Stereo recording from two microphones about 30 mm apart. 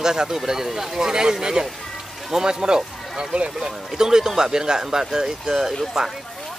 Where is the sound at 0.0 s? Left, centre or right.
Centre.